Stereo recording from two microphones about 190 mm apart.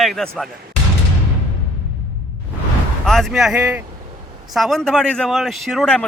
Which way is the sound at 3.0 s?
Centre (ahead or behind).